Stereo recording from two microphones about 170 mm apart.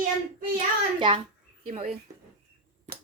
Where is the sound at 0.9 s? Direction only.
30° right (ahead or behind).